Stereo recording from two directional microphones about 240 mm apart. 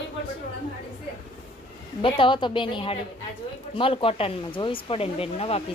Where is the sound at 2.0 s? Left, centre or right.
Left.